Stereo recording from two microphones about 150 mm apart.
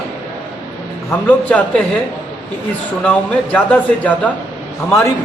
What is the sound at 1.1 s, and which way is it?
Speech, 10° left (ahead or behind).